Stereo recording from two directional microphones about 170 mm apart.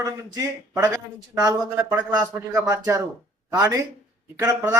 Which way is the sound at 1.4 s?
20° right (ahead or behind).